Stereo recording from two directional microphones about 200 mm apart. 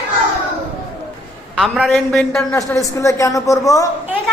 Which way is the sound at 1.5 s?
Centre (ahead or behind).